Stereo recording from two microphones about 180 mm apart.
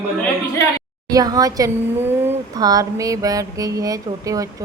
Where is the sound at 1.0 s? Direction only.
20° right (ahead or behind).